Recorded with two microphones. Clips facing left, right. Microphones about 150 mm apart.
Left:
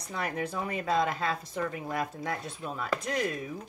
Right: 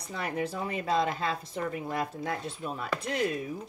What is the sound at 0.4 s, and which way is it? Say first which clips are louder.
Speech: right 1 dB; 30° right (ahead or behind).